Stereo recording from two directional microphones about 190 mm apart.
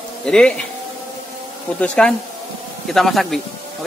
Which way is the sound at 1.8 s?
5° left (ahead or behind).